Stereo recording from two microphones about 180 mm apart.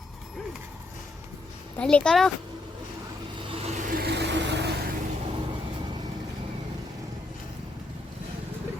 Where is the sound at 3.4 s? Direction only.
30° right (ahead or behind); by 4.7 s 75° right (ahead or behind).